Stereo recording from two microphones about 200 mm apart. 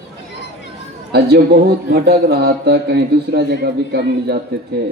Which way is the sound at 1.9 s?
50° right (ahead or behind).